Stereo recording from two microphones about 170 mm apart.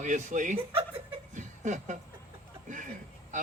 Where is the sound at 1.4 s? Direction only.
45° right (ahead or behind).